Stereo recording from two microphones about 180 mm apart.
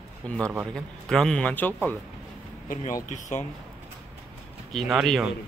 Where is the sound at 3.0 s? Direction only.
45° left (ahead or behind).